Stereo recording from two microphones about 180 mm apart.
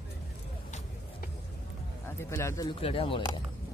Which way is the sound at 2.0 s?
15° left (ahead or behind).